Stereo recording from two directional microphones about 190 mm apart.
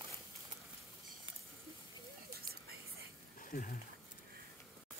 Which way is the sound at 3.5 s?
40° left (ahead or behind).